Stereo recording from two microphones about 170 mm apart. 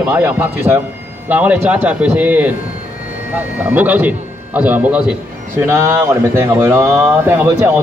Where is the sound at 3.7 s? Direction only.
10° right (ahead or behind).